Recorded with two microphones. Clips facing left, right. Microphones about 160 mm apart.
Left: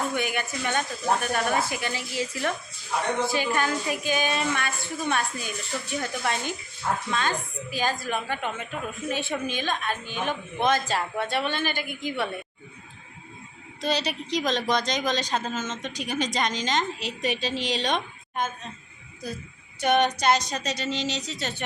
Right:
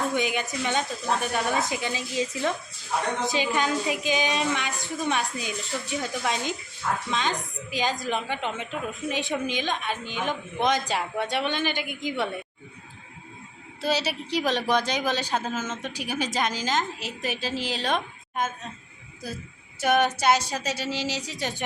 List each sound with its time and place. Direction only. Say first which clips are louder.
0.1 s speech: right 2 dB; 15° right (ahead or behind)
13.8 s speech: right 1 dB; 5° right (ahead or behind)
19.8 s speech: even; 5° right (ahead or behind)